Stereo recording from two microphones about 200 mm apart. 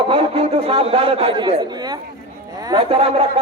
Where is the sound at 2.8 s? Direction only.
30° right (ahead or behind).